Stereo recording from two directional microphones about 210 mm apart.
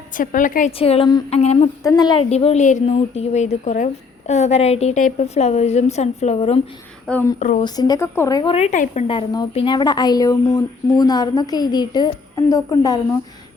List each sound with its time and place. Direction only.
0.2 s a woman's voice: 40° left (ahead or behind)
1.8 s a woman's voice: 15° left (ahead or behind)
7.1 s speech: 10° left (ahead or behind)
8.5 s a woman's voice: 35° left (ahead or behind)
9.0 s a woman's voice: 20° left (ahead or behind)